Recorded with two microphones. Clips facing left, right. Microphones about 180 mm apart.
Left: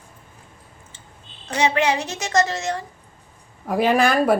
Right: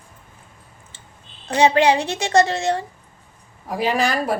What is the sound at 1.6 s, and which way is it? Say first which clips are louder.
A woman's voice: right 5 dB; 30° right (ahead or behind).